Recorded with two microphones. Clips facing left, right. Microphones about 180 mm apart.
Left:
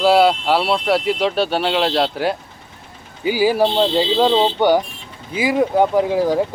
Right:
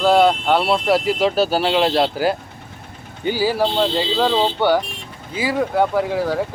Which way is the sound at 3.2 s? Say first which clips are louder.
Left 3 dB; 10° left (ahead or behind).